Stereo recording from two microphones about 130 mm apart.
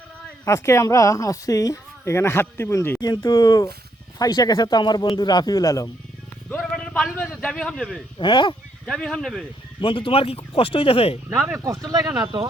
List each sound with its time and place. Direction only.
0.4 s speech: 20° left (ahead or behind)
6.6 s a sound: 5° left (ahead or behind)
7.3 s speech: 5° left (ahead or behind)
8.2 s speech: 35° left (ahead or behind)
8.9 s speech: 5° left (ahead or behind)
9.8 s speech: 40° left (ahead or behind)
11.3 s speech: 10° right (ahead or behind)
11.6 s speech: 25° right (ahead or behind)